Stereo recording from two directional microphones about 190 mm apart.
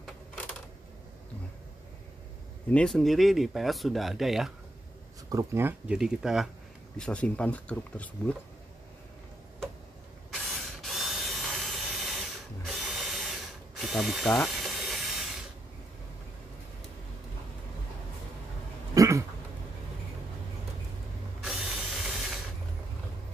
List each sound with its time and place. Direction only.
2.7 s speech: 5° left (ahead or behind)
5.3 s speech: 15° right (ahead or behind); by 8.4 s 5° left (ahead or behind)
10.3 s tools: centre (ahead or behind)
12.6 s drill: centre (ahead or behind)
13.7 s ratchet: centre (ahead or behind)
14.4 s a sound: centre (ahead or behind)
18.9 s a sound: 15° right (ahead or behind)
21.5 s ratchet: centre (ahead or behind)